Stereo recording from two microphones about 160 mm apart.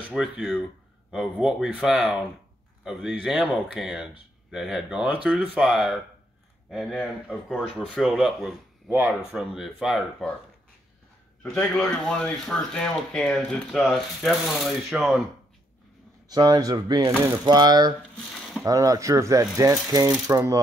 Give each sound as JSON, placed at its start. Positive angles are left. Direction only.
{"t": 0.1, "sound": "speech", "side_deg": 0}
{"t": 11.5, "sound": "speech", "side_deg": 5}
{"t": 16.3, "sound": "speech", "side_deg": -25}